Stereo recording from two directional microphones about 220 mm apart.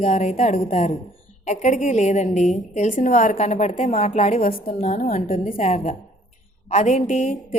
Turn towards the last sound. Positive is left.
turn(degrees=30)  # may be behind; listen again after turning